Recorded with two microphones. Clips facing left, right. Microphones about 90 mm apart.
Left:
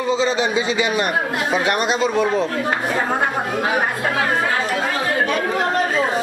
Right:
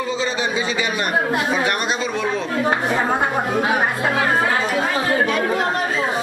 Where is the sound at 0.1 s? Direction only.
25° left (ahead or behind).